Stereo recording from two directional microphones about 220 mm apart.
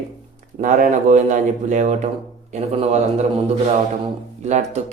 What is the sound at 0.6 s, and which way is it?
A man's voice, 35° right (ahead or behind).